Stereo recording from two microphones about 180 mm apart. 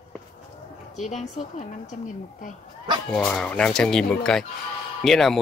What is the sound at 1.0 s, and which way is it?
Speech, 40° left (ahead or behind).